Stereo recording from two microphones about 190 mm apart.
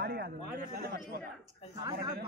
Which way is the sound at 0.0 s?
55° right (ahead or behind).